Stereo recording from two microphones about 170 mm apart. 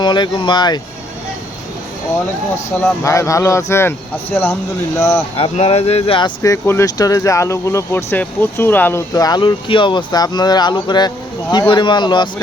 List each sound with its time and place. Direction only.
0.0 s speech: 25° left (ahead or behind)
2.8 s speech: 20° left (ahead or behind)
5.4 s speech: 35° left (ahead or behind)